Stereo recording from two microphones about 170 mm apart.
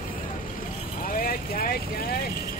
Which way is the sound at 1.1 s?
60° left (ahead or behind).